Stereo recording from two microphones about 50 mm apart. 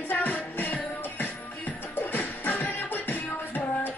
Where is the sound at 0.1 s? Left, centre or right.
Left.